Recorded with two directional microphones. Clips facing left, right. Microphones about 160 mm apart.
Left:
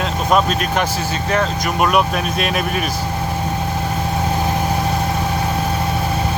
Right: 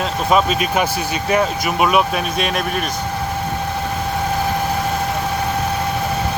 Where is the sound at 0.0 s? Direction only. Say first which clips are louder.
Even; centre (ahead or behind).